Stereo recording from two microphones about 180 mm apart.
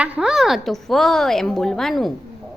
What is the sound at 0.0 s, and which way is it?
A woman's voice, 5° right (ahead or behind).